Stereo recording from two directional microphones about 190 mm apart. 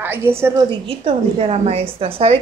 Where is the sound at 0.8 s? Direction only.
30° right (ahead or behind).